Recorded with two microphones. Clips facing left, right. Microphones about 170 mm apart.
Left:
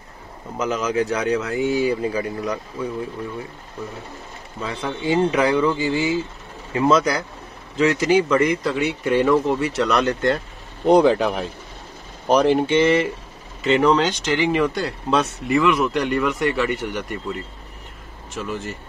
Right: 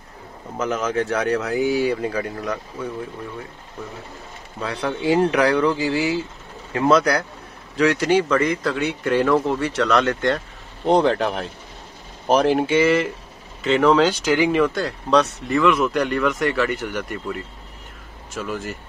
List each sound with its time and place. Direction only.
0.6 s speech: 5° right (ahead or behind)
4.6 s speech: centre (ahead or behind)